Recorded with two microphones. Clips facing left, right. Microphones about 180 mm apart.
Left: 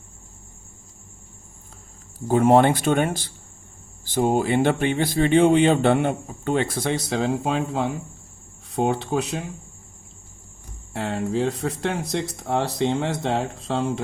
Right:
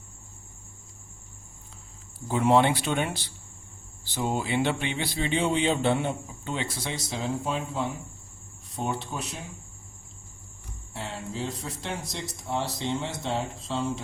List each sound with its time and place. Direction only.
2.2 s speech: 45° left (ahead or behind); by 7.9 s 90° left
8.7 s speech: 65° left (ahead or behind)
10.9 s speech: 60° left (ahead or behind)